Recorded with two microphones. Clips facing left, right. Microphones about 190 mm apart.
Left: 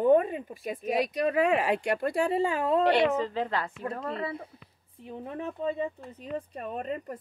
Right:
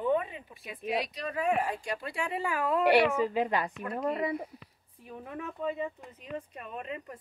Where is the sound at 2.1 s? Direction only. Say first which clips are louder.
Left 6 dB; 35° left (ahead or behind).